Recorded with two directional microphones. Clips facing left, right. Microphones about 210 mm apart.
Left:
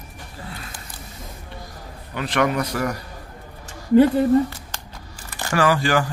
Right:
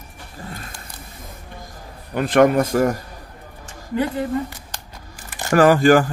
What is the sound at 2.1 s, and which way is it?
Speech, 50° right (ahead or behind).